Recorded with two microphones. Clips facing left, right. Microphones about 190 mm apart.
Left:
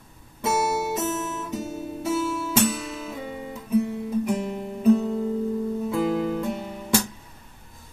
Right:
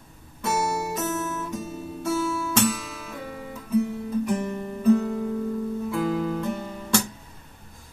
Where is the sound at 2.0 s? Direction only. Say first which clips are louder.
Even; 15° left (ahead or behind).